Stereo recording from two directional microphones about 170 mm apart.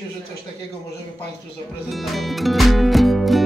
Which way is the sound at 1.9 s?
Centre (ahead or behind).